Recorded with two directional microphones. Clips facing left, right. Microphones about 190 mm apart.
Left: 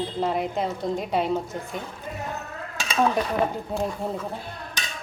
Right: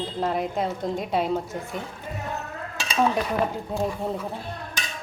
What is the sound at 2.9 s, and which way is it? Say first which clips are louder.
Speech: even; 5° right (ahead or behind).